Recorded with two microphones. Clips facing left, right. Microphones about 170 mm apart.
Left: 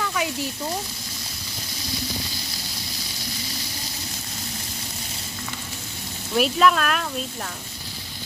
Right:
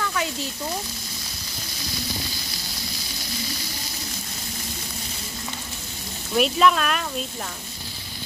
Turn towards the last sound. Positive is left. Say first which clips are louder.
# even
turn(degrees=0)  # may be behind; listen again after turning